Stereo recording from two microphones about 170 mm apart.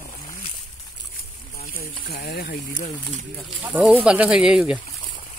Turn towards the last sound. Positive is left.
turn(degrees=-5)  # may be behind; listen again after turning